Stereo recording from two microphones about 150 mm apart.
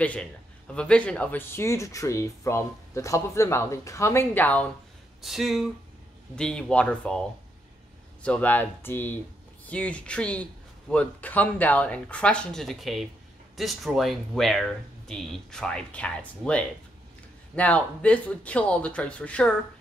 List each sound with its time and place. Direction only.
0.0 s a man's voice: 10° left (ahead or behind)
5.2 s speech: centre (ahead or behind)
8.2 s a man's voice: 10° left (ahead or behind)